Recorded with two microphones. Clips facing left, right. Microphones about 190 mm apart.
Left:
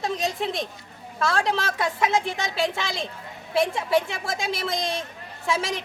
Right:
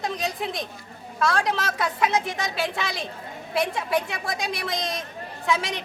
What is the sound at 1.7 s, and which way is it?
Speech, 25° left (ahead or behind).